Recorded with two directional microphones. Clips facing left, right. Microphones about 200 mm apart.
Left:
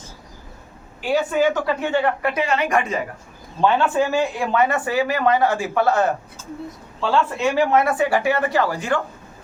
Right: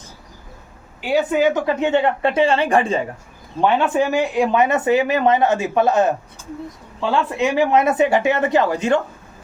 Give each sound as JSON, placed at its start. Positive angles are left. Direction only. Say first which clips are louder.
{"t": 1.0, "sound": "speech", "louder": "right 2 dB", "side_deg": -20}
{"t": 3.6, "sound": "speech", "louder": "right 1 dB", "side_deg": -20}